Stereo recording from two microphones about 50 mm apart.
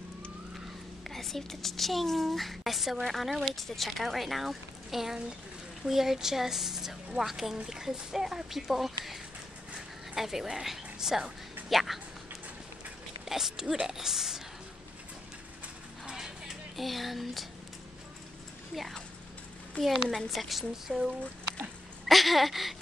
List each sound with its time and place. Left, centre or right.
1.0 s a woman's voice: centre
13.3 s speech: centre
16.1 s clip-clop: centre
16.7 s speech: centre
19.8 s a woman's voice: left
20.2 s speech: centre